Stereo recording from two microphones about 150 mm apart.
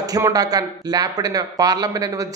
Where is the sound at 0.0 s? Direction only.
25° right (ahead or behind).